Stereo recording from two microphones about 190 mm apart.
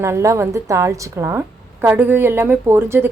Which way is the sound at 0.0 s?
15° right (ahead or behind).